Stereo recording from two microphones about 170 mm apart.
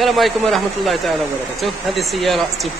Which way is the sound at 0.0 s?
Centre (ahead or behind).